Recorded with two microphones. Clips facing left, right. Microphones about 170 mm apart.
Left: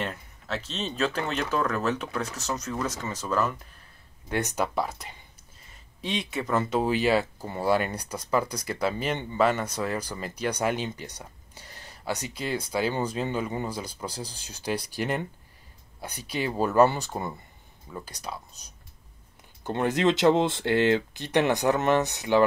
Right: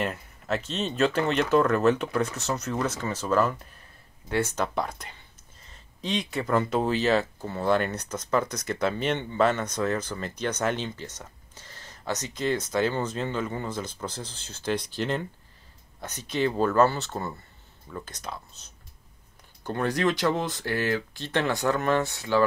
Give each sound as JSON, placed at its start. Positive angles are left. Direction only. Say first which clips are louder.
{"t": 0.0, "sound": "a sound", "louder": "right 3 dB", "side_deg": -5}
{"t": 0.7, "sound": "speech", "louder": "right 3 dB", "side_deg": -5}
{"t": 4.3, "sound": "speech", "louder": "right 1 dB", "side_deg": 15}
{"t": 4.7, "sound": "speech", "louder": "left 1 dB", "side_deg": 5}
{"t": 19.6, "sound": "speech", "louder": "left 2 dB", "side_deg": 20}